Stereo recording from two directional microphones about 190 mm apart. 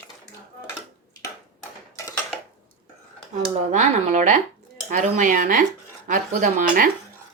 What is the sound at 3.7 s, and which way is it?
Speech, 40° right (ahead or behind).